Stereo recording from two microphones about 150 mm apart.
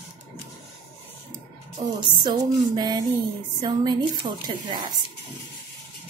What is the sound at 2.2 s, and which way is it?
A woman's voice, 30° right (ahead or behind).